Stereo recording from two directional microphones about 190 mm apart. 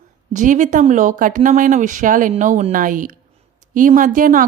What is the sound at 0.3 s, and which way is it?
Speech, 40° right (ahead or behind).